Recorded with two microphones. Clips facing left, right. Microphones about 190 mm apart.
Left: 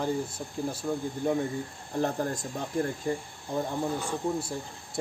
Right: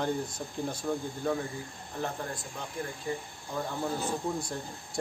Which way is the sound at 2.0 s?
40° left (ahead or behind).